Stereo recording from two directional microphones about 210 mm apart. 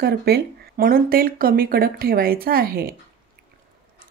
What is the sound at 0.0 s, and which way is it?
Speech, 45° right (ahead or behind).